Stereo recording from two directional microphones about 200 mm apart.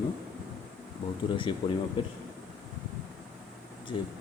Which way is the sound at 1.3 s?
25° left (ahead or behind).